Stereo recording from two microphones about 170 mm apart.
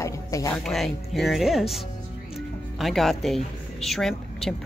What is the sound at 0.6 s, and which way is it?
Speech, centre (ahead or behind).